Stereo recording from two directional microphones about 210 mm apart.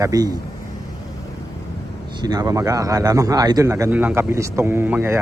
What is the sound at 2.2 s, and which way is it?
Speech, 20° right (ahead or behind).